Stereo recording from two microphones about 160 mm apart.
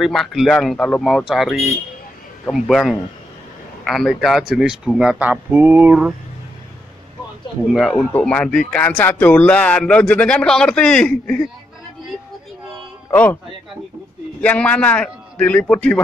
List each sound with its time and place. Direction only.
0.0 s speech: centre (ahead or behind)
7.7 s speech: centre (ahead or behind)
13.1 s speech: 10° left (ahead or behind)
14.4 s speech: 10° left (ahead or behind)